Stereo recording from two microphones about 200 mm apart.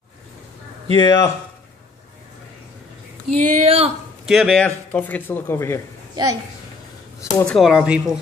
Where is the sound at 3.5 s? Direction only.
30° right (ahead or behind).